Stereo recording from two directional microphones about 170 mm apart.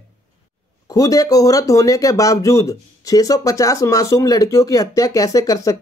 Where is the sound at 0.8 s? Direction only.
20° left (ahead or behind).